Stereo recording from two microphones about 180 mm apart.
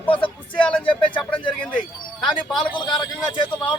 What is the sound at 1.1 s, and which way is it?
Speech, 25° left (ahead or behind).